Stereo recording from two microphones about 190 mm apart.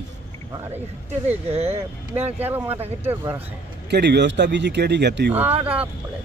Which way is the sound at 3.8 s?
60° right (ahead or behind).